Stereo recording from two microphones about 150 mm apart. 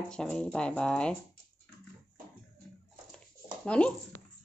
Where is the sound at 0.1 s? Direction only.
5° left (ahead or behind).